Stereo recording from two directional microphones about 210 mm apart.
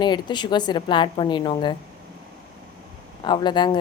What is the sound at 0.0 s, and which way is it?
Speech, 20° left (ahead or behind).